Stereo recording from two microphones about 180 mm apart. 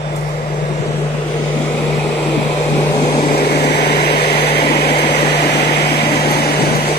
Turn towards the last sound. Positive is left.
turn(degrees=60)  # may be behind; listen again after turning